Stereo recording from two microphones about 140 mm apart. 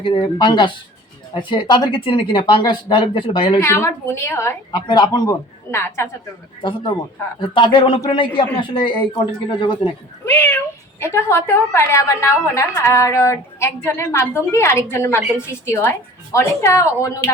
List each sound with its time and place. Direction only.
0.0 s speech: 35° left (ahead or behind)
3.6 s a woman's voice: 20° left (ahead or behind)
4.9 s a woman's voice: 30° left (ahead or behind)
6.6 s speech: 35° left (ahead or behind)
10.2 s a woman's voice: 15° left (ahead or behind)